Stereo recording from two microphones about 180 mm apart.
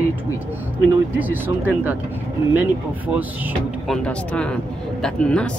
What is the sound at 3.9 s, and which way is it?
Speech, 5° left (ahead or behind).